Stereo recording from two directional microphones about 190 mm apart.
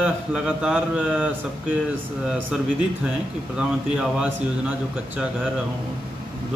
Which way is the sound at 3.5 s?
5° right (ahead or behind).